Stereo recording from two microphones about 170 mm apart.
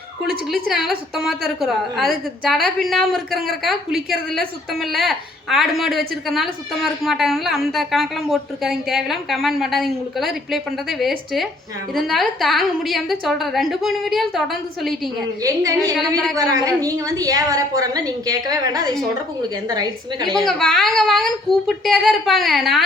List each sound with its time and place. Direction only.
0.5 s a woman's voice: centre (ahead or behind)
16.6 s a woman's voice: 20° right (ahead or behind)
20.4 s a woman's voice: 5° left (ahead or behind)